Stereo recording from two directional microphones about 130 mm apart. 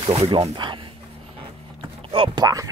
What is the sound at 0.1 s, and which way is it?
Speech, 50° right (ahead or behind).